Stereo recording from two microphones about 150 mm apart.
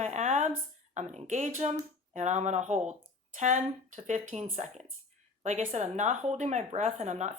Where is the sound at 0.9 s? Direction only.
50° right (ahead or behind).